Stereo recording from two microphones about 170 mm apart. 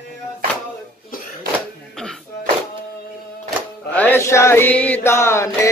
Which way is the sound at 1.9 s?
5° left (ahead or behind).